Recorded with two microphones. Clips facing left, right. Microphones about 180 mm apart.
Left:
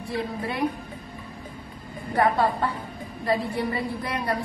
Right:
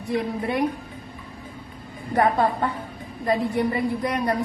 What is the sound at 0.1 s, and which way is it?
Speech, 20° right (ahead or behind).